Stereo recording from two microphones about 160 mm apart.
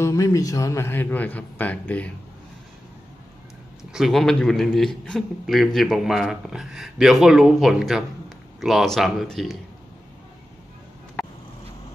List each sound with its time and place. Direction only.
0.0 s a man's voice: 20° left (ahead or behind)
3.9 s a man's voice: centre (ahead or behind)